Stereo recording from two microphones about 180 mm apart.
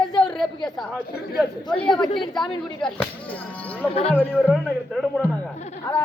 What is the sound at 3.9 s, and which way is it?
Speech, 35° left (ahead or behind).